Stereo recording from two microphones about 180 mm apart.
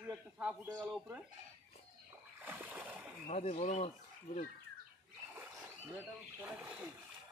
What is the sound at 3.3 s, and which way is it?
Speech, 35° left (ahead or behind).